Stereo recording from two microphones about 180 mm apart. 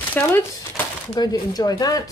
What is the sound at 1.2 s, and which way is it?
Speech, 20° left (ahead or behind).